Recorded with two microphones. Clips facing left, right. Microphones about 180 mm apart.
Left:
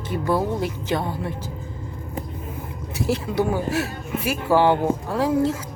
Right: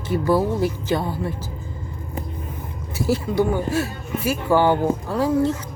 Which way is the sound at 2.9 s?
Centre (ahead or behind).